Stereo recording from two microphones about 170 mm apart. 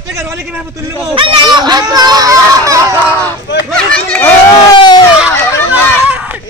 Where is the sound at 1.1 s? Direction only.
30° right (ahead or behind).